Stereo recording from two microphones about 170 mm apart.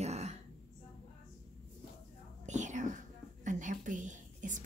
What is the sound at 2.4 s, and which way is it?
Whispering, 45° right (ahead or behind).